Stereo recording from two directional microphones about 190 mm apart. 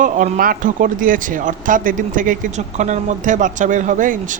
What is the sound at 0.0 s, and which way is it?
Speech, 40° right (ahead or behind).